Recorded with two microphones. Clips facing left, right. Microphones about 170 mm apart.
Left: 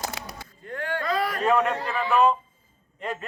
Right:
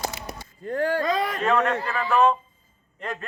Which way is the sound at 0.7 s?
35° right (ahead or behind).